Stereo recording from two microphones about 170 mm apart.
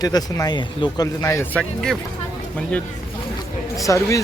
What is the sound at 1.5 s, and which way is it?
Speech, 5° left (ahead or behind).